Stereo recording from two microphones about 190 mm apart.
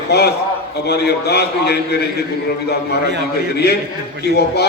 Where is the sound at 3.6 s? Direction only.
60° left (ahead or behind).